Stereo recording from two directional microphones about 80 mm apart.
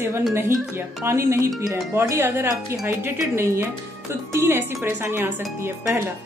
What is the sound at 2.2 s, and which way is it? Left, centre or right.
A woman's voice, right.